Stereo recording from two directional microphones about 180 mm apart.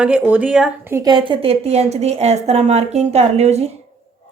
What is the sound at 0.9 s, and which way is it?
Speech, 25° right (ahead or behind).